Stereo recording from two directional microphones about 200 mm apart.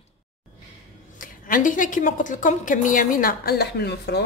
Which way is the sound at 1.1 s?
45° left (ahead or behind).